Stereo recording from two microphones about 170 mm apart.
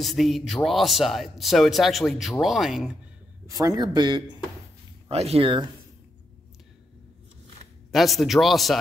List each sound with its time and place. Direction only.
0.0 s speech: centre (ahead or behind)
3.4 s speech: 20° right (ahead or behind)
5.0 s speech: 35° right (ahead or behind)
7.9 s speech: centre (ahead or behind)